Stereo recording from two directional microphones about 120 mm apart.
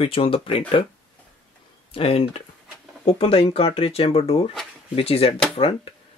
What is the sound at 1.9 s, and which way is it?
Speech, 50° left (ahead or behind).